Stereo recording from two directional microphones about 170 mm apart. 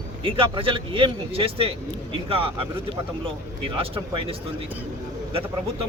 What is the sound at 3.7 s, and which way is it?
Speech, 30° right (ahead or behind).